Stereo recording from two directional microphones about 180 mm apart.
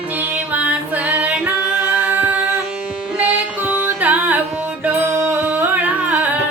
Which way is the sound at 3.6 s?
5° right (ahead or behind).